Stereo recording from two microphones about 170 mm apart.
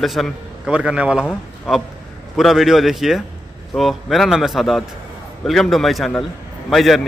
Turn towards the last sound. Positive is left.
turn(degrees=0)  # may be behind; listen again after turning